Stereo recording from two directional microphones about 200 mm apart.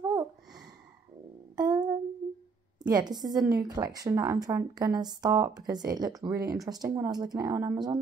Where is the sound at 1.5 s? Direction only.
20° right (ahead or behind).